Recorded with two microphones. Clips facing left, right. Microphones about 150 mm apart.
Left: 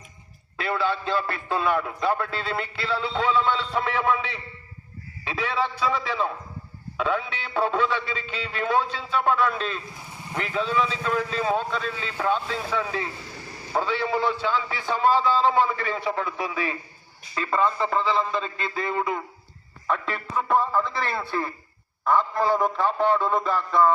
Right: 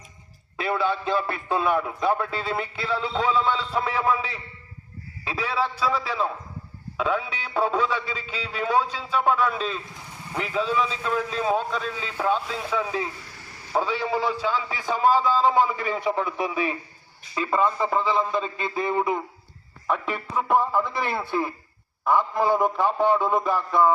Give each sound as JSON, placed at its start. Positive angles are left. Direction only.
{"t": 0.5, "sound": "a man's voice", "side_deg": -20}